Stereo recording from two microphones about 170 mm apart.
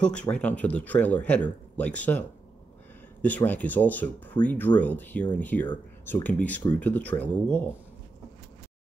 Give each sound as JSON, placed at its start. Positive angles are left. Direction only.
{"t": 0.0, "sound": "speech", "side_deg": 5}